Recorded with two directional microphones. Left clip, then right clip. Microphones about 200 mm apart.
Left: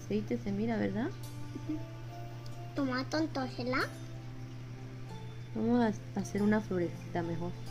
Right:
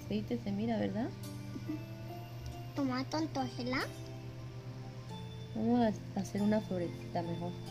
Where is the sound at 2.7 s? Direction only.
25° right (ahead or behind).